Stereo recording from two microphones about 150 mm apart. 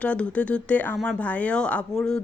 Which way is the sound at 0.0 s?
10° left (ahead or behind).